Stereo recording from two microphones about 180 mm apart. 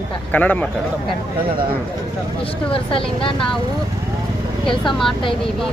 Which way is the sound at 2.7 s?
30° left (ahead or behind).